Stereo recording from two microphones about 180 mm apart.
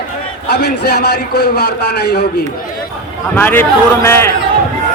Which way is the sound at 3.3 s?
10° left (ahead or behind).